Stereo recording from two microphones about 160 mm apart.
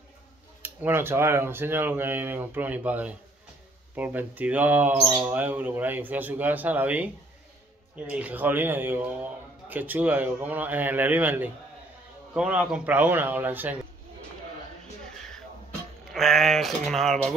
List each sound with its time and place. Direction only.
0.6 s a man's voice: 10° right (ahead or behind)
16.1 s speech: centre (ahead or behind)